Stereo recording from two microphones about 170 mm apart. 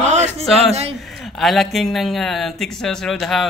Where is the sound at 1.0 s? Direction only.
Centre (ahead or behind).